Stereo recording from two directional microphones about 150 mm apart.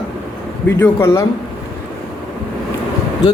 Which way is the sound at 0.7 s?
20° left (ahead or behind).